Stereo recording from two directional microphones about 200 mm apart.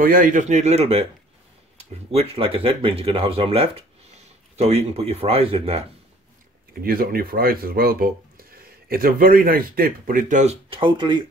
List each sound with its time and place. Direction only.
0.0 s speech: 45° right (ahead or behind)
6.7 s speech: 50° right (ahead or behind); by 11.2 s 25° right (ahead or behind)